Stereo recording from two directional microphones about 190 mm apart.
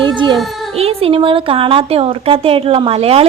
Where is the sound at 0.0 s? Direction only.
25° right (ahead or behind).